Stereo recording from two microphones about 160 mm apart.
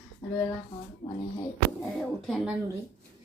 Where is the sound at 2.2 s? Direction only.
Centre (ahead or behind).